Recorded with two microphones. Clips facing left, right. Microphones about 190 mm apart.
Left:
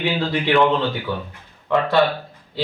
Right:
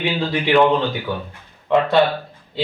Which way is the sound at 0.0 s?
15° right (ahead or behind).